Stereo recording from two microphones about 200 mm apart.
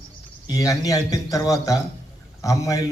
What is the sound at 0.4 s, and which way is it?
A man's voice, 15° left (ahead or behind).